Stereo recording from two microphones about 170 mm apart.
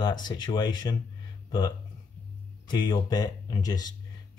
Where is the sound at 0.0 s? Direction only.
25° left (ahead or behind).